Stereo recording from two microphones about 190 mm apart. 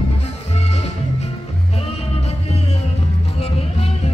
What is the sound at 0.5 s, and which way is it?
Music, 35° left (ahead or behind).